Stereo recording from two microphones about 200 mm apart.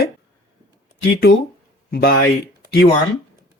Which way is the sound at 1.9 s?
50° left (ahead or behind).